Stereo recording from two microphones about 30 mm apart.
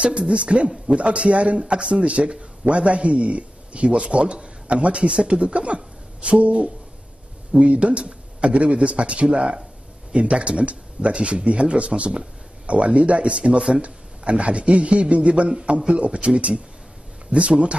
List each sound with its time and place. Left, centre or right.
0.0 s speech: right
4.6 s speech: right